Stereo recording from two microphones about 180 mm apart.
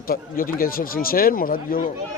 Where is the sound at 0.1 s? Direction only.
55° left (ahead or behind).